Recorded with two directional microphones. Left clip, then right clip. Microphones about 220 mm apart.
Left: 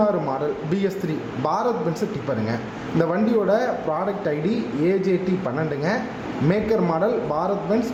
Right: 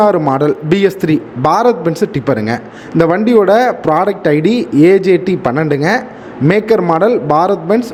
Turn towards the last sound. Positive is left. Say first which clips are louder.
# right 12 dB
turn(degrees=-45)  # may be behind; listen again after turning